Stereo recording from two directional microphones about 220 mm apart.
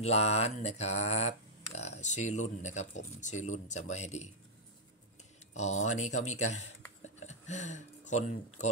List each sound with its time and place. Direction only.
0.0 s speech: 30° left (ahead or behind)
5.5 s speech: 30° left (ahead or behind)
7.2 s a sound: 30° left (ahead or behind)